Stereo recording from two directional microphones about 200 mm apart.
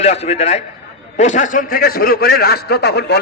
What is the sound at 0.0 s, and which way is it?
A man's voice, 35° left (ahead or behind).